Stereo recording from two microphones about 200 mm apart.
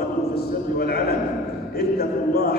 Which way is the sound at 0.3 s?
50° left (ahead or behind).